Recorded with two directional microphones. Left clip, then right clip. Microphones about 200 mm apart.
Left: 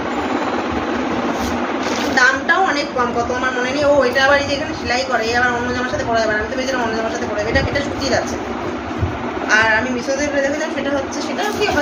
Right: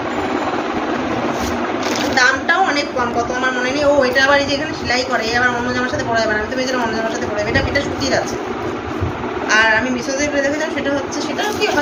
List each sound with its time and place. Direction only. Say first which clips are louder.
2.1 s a sound: even; 10° left (ahead or behind)
3.8 s music: even; 15° left (ahead or behind)
9.5 s music: right 1 dB; 15° left (ahead or behind)